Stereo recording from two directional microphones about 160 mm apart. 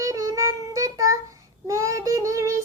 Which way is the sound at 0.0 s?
20° right (ahead or behind).